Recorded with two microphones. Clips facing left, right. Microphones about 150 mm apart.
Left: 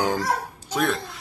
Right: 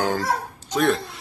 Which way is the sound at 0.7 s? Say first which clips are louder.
Right 4 dB; centre (ahead or behind).